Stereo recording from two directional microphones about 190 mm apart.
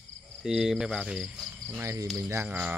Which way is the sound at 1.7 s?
15° right (ahead or behind).